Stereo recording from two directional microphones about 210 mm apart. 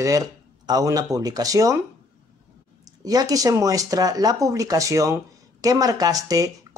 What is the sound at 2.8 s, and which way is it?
Speech, 20° right (ahead or behind).